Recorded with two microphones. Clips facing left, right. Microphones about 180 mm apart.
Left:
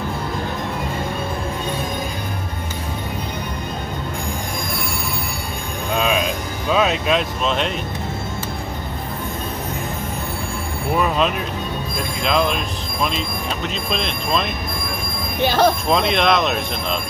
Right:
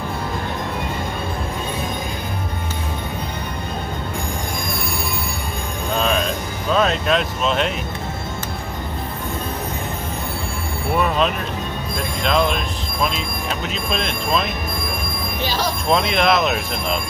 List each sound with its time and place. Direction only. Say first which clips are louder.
5.9 s music: even; 5° left (ahead or behind)
11.0 s speech: even; centre (ahead or behind)
13.9 s speech: right 1 dB; centre (ahead or behind)
15.4 s speech: left 8 dB; 55° left (ahead or behind)
15.9 s speech: even; centre (ahead or behind)